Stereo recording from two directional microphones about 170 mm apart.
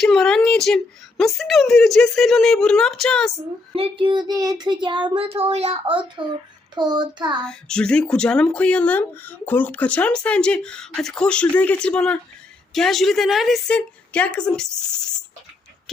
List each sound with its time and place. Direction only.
0.0 s speech: 5° left (ahead or behind)
3.8 s speech: 35° right (ahead or behind)
7.4 s speech: 5° left (ahead or behind)